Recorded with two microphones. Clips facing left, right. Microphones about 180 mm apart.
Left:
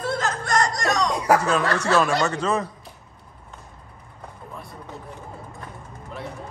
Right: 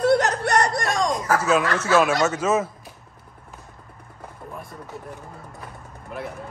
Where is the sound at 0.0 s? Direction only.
70° right (ahead or behind); by 1.1 s 55° right (ahead or behind).